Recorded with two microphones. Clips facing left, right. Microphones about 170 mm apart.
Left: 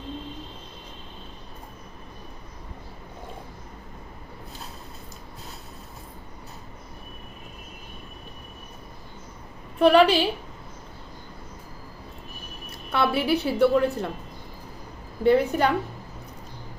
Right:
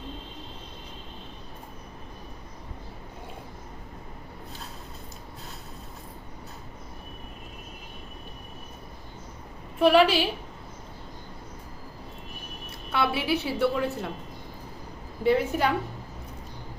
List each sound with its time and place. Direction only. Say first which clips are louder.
9.8 s a woman's voice: left 2 dB; 5° right (ahead or behind)
12.9 s a woman's voice: left 3 dB; centre (ahead or behind)
15.2 s a woman's voice: left 4 dB; 5° right (ahead or behind)